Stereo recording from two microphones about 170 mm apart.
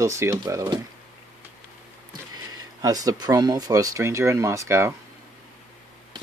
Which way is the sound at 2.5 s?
20° right (ahead or behind).